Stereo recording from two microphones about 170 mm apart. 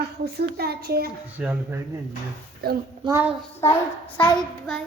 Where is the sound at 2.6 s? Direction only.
65° right (ahead or behind).